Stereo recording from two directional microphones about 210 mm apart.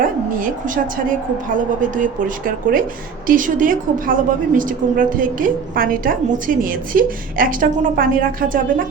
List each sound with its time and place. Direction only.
0.0 s a woman's voice: 40° right (ahead or behind)
2.0 s a woman's voice: 40° right (ahead or behind)